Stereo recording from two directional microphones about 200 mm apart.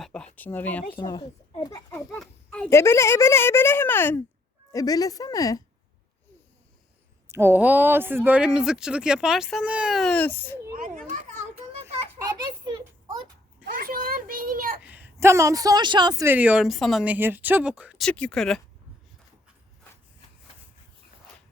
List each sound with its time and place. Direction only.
0.0 s a sound: 5° left (ahead or behind)
0.3 s speech: 10° left (ahead or behind)
0.9 s speech: 20° left (ahead or behind)
1.6 s children playing: 15° left (ahead or behind)
2.0 s speech: centre (ahead or behind); by 5.6 s 15° left (ahead or behind)
7.3 s speech: 10° right (ahead or behind); by 10.6 s 10° left (ahead or behind)
12.2 s a sound: 20° right (ahead or behind)
13.7 s a sound: 45° right (ahead or behind)
14.8 s speech: 10° right (ahead or behind)